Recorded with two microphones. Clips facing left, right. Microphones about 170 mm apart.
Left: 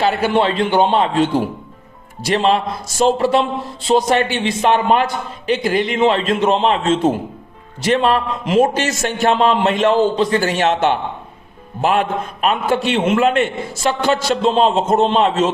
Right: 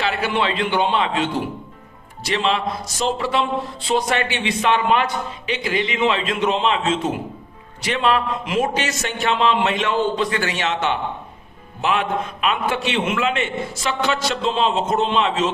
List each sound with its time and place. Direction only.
0.0 s a man's voice: 45° left (ahead or behind)